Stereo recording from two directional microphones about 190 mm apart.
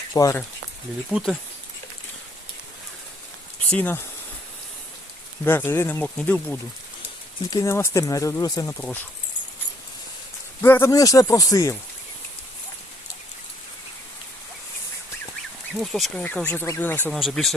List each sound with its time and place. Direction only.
0.1 s speech: 15° left (ahead or behind)
1.1 s speech: centre (ahead or behind)
3.7 s speech: 10° left (ahead or behind)
5.5 s speech: 10° left (ahead or behind)
10.6 s speech: 15° left (ahead or behind)
15.7 s speech: centre (ahead or behind)
17.1 s speech: centre (ahead or behind)